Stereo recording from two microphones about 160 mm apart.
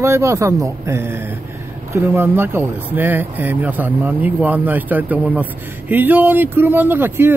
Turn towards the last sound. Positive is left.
turn(degrees=-15)  # may be behind; listen again after turning